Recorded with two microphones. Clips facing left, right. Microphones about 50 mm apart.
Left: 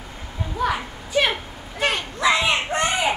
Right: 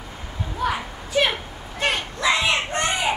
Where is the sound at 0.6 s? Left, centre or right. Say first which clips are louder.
Left 1 dB; centre.